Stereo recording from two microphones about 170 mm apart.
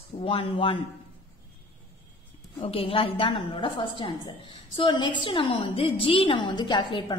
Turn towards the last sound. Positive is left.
turn(degrees=30)  # may be behind; listen again after turning